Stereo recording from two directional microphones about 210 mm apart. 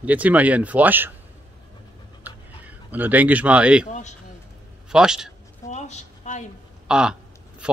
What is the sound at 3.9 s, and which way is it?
Speech, 35° left (ahead or behind).